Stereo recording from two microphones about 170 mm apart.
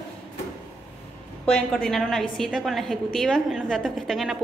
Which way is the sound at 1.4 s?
5° left (ahead or behind).